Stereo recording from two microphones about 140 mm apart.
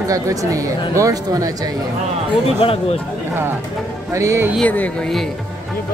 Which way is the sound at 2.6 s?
40° left (ahead or behind).